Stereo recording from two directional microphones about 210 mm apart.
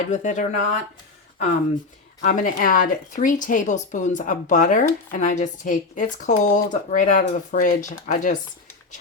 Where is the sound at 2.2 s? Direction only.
40° left (ahead or behind).